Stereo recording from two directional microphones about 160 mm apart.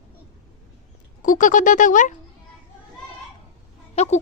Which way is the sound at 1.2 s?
55° left (ahead or behind).